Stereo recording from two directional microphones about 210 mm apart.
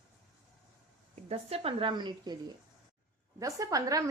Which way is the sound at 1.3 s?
30° right (ahead or behind).